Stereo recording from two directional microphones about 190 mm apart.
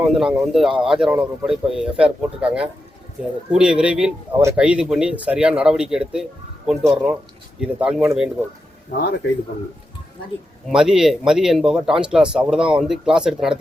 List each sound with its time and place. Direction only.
0.0 s speech: 5° right (ahead or behind)
9.0 s speech: 60° left (ahead or behind)
10.7 s speech: 5° right (ahead or behind)